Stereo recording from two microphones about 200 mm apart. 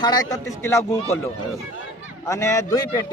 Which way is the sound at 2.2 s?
15° left (ahead or behind).